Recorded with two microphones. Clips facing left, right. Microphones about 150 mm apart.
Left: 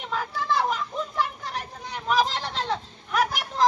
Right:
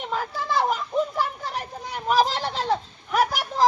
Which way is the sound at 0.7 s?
5° right (ahead or behind).